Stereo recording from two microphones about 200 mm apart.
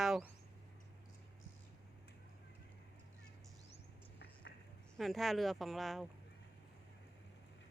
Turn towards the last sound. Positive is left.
turn(degrees=0)  # may be behind; listen again after turning